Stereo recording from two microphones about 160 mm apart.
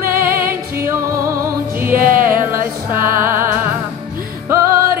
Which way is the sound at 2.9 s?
15° right (ahead or behind).